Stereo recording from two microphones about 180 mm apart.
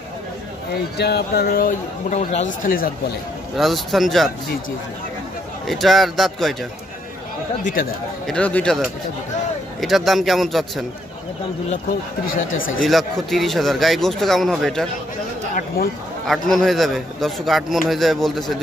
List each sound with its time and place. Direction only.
0.9 s speech: 65° left (ahead or behind); by 2.4 s 40° left (ahead or behind)
2.6 s speech: 55° left (ahead or behind)
3.5 s a man's voice: centre (ahead or behind)
5.7 s a man's voice: centre (ahead or behind)
8.3 s a man's voice: 5° left (ahead or behind)
12.4 s speech: 90° left
12.8 s a man's voice: centre (ahead or behind)
16.3 s a man's voice: centre (ahead or behind)